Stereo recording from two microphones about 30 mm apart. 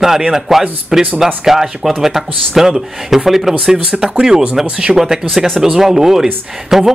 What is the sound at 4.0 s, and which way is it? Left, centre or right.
Speech, centre.